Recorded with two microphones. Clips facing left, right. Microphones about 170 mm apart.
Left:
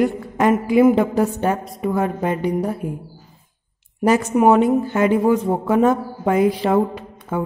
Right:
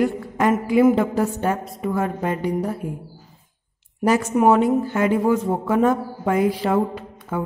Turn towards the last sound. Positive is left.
turn(degrees=20)  # may be behind; listen again after turning